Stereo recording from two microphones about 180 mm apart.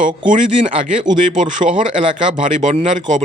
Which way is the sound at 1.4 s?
45° right (ahead or behind).